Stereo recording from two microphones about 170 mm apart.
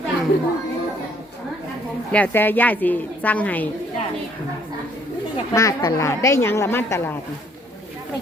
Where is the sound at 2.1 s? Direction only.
10° left (ahead or behind).